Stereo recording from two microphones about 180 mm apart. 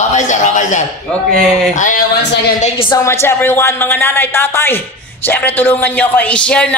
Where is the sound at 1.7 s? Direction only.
45° left (ahead or behind).